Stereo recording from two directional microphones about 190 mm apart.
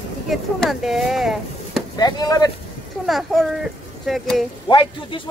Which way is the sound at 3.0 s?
Centre (ahead or behind).